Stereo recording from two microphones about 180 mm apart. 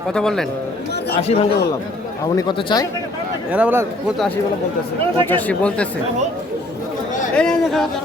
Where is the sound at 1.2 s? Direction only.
35° left (ahead or behind).